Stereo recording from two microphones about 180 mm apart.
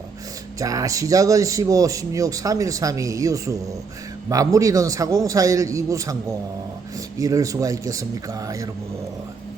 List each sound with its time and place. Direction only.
0.6 s a man's voice: 20° right (ahead or behind)